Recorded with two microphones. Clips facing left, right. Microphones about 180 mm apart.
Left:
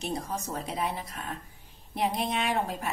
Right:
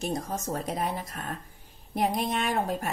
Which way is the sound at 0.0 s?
45° right (ahead or behind).